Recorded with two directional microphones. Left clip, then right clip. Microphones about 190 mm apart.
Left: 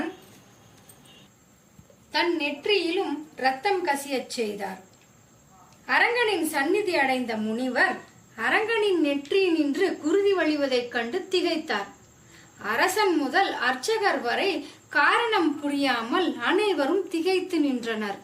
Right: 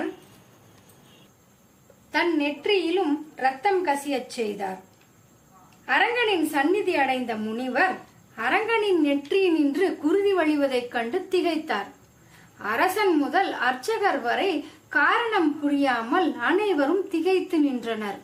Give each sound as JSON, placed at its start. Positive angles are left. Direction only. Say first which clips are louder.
{"t": 2.1, "sound": "a woman's voice", "louder": "right 1 dB", "side_deg": -30}
{"t": 5.8, "sound": "a woman's voice", "louder": "even", "side_deg": -35}